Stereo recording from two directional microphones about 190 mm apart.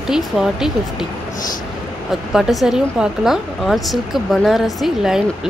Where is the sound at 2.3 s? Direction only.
Centre (ahead or behind).